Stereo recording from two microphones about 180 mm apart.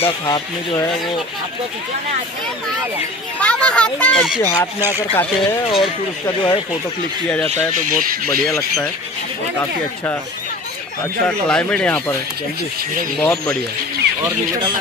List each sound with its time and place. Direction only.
0.2 s speech: 20° left (ahead or behind)
3.3 s speech: 5° left (ahead or behind)
4.4 s speech: 15° left (ahead or behind)
5.7 s speech: 25° left (ahead or behind)
7.9 s speech: 50° right (ahead or behind)
8.3 s speech: 15° left (ahead or behind)
11.4 s speech: 5° left (ahead or behind)
13.2 s speech: 10° left (ahead or behind)